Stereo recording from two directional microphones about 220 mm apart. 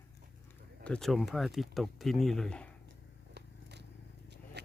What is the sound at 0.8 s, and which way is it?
Speech, 5° left (ahead or behind).